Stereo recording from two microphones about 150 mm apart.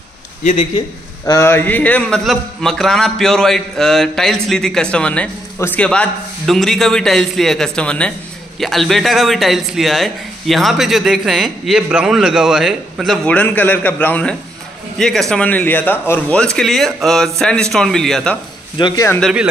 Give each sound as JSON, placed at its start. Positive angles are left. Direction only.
{"t": 1.2, "sound": "speech", "side_deg": 20}
{"t": 18.8, "sound": "speech", "side_deg": 30}
{"t": 19.0, "sound": "speech", "side_deg": 5}